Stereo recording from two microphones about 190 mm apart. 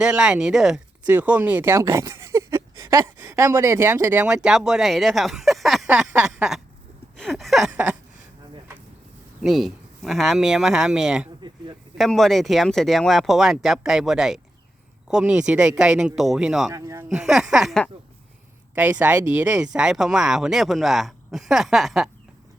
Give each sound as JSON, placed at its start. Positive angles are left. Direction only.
{"t": 0.0, "sound": "speech", "side_deg": -5}
{"t": 9.4, "sound": "speech", "side_deg": 0}
{"t": 16.7, "sound": "a sound", "side_deg": -15}
{"t": 17.1, "sound": "speech", "side_deg": 0}